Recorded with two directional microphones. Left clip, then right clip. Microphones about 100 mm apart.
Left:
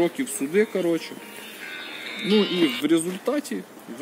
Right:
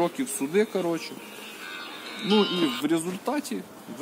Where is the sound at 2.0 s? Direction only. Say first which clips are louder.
Left 1 dB; 25° right (ahead or behind).